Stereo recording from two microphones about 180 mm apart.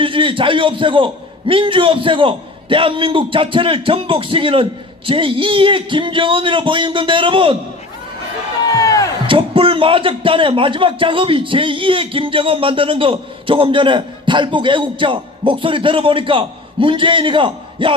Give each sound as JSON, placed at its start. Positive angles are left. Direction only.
{"t": 0.0, "sound": "a man's voice", "side_deg": -30}
{"t": 8.7, "sound": "music", "side_deg": 20}
{"t": 9.2, "sound": "a man's voice", "side_deg": -30}